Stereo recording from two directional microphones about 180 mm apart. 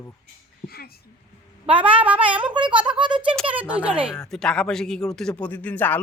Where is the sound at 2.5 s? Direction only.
25° right (ahead or behind).